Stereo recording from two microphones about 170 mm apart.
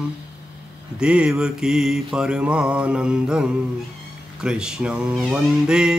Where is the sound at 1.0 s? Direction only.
5° right (ahead or behind).